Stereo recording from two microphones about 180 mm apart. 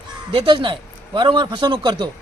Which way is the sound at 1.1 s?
25° right (ahead or behind).